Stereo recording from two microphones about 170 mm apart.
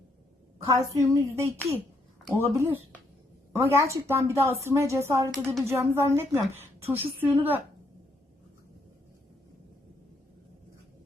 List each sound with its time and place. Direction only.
0.6 s a woman's voice: 20° right (ahead or behind)